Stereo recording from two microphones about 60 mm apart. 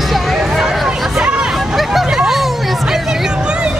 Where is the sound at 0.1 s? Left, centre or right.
Centre.